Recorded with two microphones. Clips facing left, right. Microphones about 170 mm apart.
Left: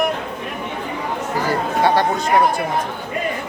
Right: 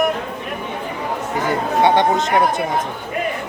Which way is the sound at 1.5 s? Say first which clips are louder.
Right 2 dB; 25° right (ahead or behind).